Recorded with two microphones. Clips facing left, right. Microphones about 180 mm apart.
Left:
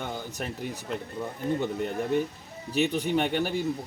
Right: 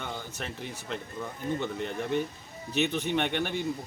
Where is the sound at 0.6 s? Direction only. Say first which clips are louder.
Left 3 dB; 45° left (ahead or behind).